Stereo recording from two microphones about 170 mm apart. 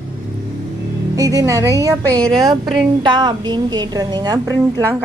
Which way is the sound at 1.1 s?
20° right (ahead or behind).